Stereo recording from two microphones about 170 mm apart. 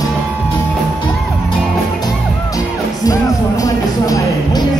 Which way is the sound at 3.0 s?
20° left (ahead or behind).